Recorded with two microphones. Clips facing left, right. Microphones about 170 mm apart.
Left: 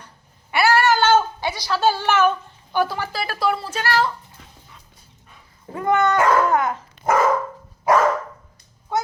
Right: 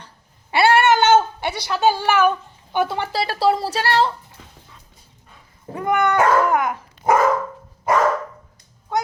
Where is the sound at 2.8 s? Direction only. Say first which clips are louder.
Right 2 dB; 25° right (ahead or behind).